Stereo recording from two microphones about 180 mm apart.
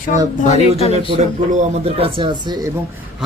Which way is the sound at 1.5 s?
40° right (ahead or behind).